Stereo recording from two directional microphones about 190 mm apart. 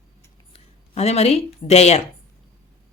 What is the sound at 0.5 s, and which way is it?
Speech, 35° left (ahead or behind).